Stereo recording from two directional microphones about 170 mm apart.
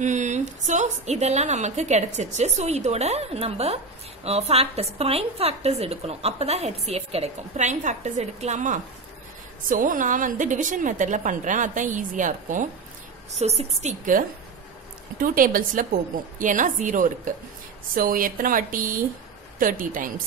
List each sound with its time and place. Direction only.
0.0 s a woman's voice: 45° right (ahead or behind)
13.4 s a woman's voice: 40° right (ahead or behind)
15.2 s a woman's voice: 55° right (ahead or behind)